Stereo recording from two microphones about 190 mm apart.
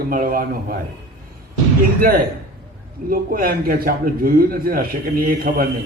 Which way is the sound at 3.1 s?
50° right (ahead or behind).